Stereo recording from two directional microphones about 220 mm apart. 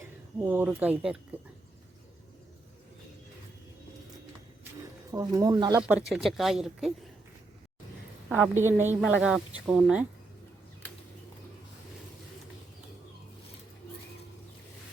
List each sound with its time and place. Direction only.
0.3 s speech: 10° right (ahead or behind)
5.1 s speech: 15° right (ahead or behind)
6.1 s speech: centre (ahead or behind)
8.3 s speech: 10° right (ahead or behind)